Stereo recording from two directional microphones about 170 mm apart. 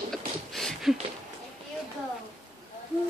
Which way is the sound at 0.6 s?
Centre (ahead or behind).